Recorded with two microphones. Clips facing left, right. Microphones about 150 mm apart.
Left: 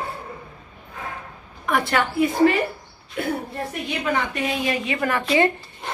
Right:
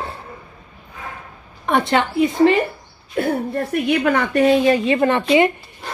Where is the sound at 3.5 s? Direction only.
65° right (ahead or behind).